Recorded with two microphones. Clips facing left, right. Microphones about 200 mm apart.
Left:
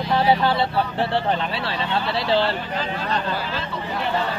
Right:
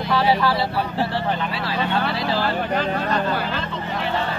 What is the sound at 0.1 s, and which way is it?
Vehicle, 25° left (ahead or behind).